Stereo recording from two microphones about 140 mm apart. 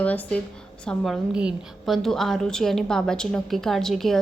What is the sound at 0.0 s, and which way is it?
A woman's voice, 10° left (ahead or behind).